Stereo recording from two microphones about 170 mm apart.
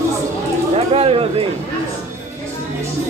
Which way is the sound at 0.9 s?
35° right (ahead or behind).